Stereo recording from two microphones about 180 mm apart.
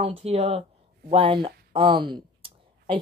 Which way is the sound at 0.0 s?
35° right (ahead or behind).